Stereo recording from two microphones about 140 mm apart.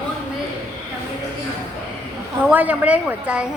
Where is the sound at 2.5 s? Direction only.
10° right (ahead or behind).